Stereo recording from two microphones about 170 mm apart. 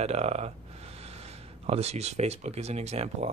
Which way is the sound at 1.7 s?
40° right (ahead or behind).